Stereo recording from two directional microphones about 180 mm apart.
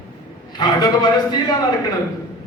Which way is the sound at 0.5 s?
25° left (ahead or behind).